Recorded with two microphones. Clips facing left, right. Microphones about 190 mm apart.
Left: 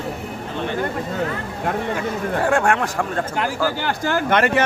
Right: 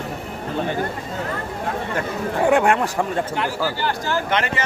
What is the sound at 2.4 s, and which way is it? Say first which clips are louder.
Speech: right 3 dB; 5° right (ahead or behind).